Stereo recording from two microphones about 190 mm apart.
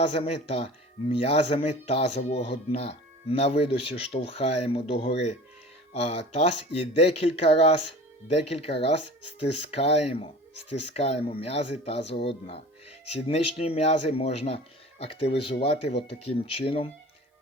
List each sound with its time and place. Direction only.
0.2 s speech: 30° left (ahead or behind)